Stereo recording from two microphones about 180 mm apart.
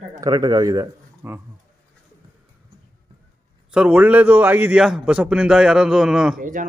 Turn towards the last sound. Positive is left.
turn(degrees=-50)  # may be behind; listen again after turning